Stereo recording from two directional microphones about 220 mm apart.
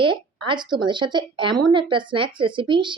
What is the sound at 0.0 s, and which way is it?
Speech, 20° right (ahead or behind).